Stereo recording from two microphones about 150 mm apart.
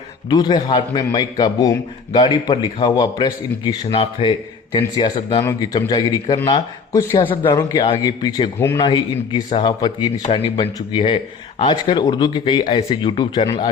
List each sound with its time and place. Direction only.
0.3 s a man's voice: 30° left (ahead or behind)
5.4 s a man's voice: 20° left (ahead or behind)
8.5 s speech: 15° left (ahead or behind)
8.8 s a man's voice: 30° left (ahead or behind)